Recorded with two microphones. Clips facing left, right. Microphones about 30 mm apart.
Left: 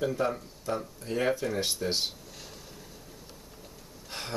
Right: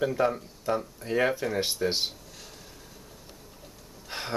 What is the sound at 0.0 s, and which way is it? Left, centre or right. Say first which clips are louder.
Speech: right 3 dB; centre.